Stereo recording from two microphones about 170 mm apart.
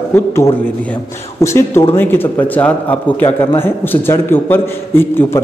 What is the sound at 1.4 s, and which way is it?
A man's voice, 15° left (ahead or behind).